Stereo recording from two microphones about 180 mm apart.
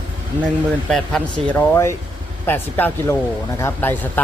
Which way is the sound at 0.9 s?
5° left (ahead or behind).